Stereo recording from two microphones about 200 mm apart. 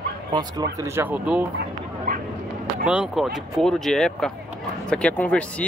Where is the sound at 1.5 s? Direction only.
45° right (ahead or behind).